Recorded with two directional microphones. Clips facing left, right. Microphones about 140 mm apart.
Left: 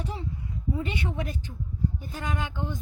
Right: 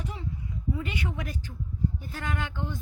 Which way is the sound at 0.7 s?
25° left (ahead or behind).